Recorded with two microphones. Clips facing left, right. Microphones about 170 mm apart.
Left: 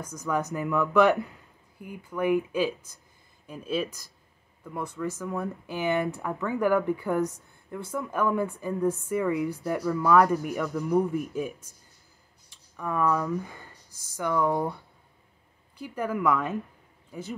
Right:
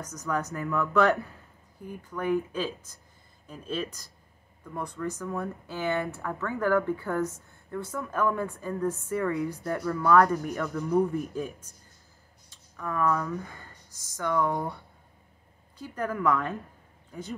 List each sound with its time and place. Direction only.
0.3 s speech: 15° left (ahead or behind)
10.6 s speech: centre (ahead or behind)
11.3 s speech: 15° left (ahead or behind)
12.7 s speech: 15° left (ahead or behind)
15.8 s speech: 10° left (ahead or behind)